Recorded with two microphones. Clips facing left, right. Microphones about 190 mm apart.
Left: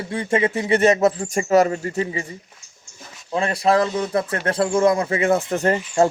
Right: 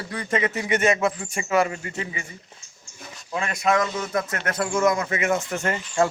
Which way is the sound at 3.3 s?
35° left (ahead or behind).